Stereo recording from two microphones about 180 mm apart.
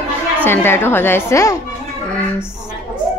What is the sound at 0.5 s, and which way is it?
A woman's voice, 10° left (ahead or behind).